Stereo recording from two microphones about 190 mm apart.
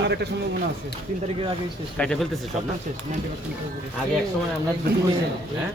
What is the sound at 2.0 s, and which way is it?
Speech, 5° left (ahead or behind).